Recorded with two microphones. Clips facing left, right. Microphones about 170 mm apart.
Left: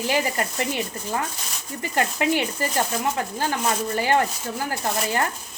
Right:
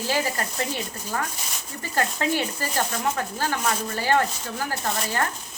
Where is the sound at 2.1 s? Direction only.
15° left (ahead or behind).